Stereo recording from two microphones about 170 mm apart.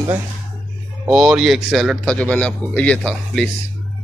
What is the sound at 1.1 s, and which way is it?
A man's voice, 5° right (ahead or behind).